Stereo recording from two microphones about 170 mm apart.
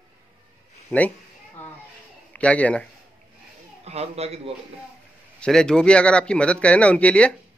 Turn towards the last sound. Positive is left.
turn(degrees=5)  # may be behind; listen again after turning